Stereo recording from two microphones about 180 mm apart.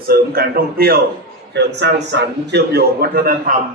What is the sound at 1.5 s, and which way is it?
A man's voice, 70° right (ahead or behind).